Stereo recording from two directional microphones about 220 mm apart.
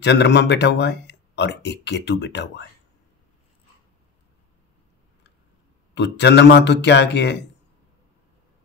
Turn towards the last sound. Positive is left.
turn(degrees=50)  # may be behind; listen again after turning